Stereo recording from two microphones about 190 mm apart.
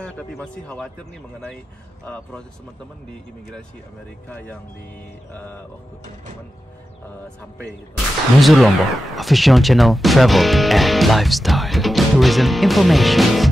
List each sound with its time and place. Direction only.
0.4 s speech: 5° left (ahead or behind)
4.3 s speech: 10° left (ahead or behind)
8.4 s speech: centre (ahead or behind)